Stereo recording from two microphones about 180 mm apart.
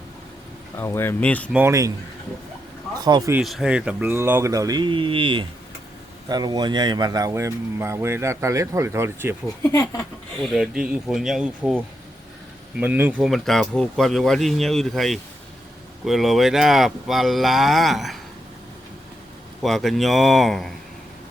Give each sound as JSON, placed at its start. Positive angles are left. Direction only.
{"t": 0.8, "sound": "speech", "side_deg": 15}
{"t": 1.5, "sound": "speech", "side_deg": -15}
{"t": 3.0, "sound": "speech", "side_deg": -20}
{"t": 3.3, "sound": "speech", "side_deg": -5}
{"t": 10.4, "sound": "speech", "side_deg": 0}
{"t": 13.3, "sound": "speech", "side_deg": 0}
{"t": 19.6, "sound": "speech", "side_deg": 0}